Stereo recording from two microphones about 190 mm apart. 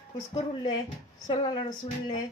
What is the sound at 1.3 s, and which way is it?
Speech, 25° left (ahead or behind).